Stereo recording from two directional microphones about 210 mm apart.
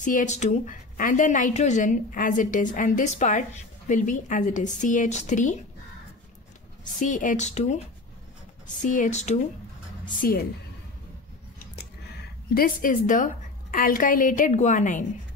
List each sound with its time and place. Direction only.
0.0 s a woman's voice: 35° left (ahead or behind)
7.0 s a woman's voice: 40° left (ahead or behind)
8.8 s a woman's voice: 35° left (ahead or behind)
10.2 s a woman's voice: 45° left (ahead or behind)
12.5 s a woman's voice: 40° left (ahead or behind)